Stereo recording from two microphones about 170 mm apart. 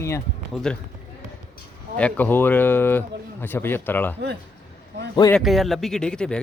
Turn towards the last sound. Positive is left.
turn(degrees=5)  # may be behind; listen again after turning